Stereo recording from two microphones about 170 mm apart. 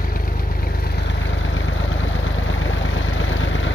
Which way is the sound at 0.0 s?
55° left (ahead or behind).